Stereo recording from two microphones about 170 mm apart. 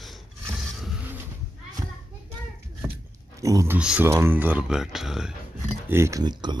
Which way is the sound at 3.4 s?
20° right (ahead or behind).